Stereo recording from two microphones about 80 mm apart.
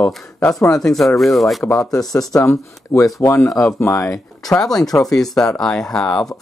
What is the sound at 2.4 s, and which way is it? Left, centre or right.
Speech, left.